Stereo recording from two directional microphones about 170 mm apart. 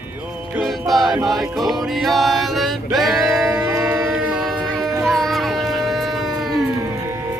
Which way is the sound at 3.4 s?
10° right (ahead or behind).